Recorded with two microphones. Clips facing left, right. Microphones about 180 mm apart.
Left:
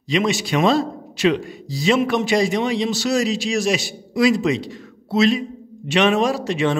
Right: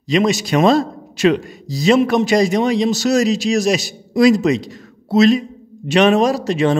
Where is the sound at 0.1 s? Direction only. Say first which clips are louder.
Right 4 dB; 40° right (ahead or behind).